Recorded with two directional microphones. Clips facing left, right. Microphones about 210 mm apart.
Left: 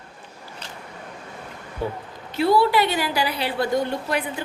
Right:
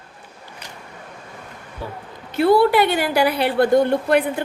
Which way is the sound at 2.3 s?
55° right (ahead or behind).